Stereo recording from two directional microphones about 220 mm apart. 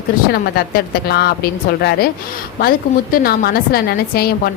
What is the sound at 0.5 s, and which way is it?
A woman's voice, 45° left (ahead or behind).